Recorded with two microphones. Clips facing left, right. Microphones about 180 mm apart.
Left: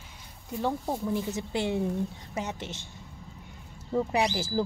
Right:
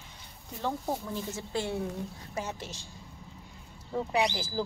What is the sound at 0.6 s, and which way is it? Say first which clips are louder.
Speech: left 3 dB; 15° left (ahead or behind).